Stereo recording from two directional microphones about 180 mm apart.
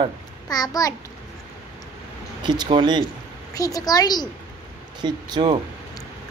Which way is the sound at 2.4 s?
25° right (ahead or behind).